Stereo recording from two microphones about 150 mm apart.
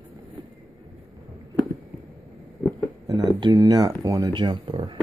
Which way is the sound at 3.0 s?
25° right (ahead or behind).